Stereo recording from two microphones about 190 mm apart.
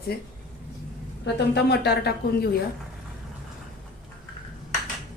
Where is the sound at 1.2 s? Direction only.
60° left (ahead or behind).